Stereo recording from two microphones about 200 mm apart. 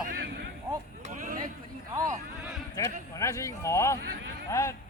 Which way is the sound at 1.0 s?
40° right (ahead or behind).